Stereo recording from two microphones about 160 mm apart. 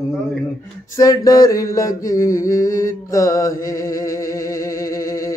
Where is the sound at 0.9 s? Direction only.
20° left (ahead or behind).